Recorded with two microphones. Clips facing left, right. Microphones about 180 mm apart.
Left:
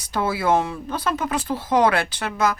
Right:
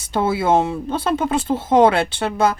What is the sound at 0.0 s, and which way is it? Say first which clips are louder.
Speech: right 4 dB; 25° right (ahead or behind).